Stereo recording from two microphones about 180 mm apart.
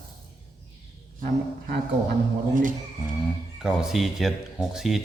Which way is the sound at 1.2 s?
60° right (ahead or behind).